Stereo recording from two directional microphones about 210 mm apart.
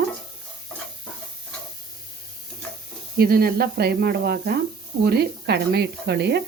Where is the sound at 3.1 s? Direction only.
45° right (ahead or behind).